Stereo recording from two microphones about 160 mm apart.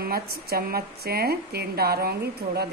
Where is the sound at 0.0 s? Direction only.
70° right (ahead or behind).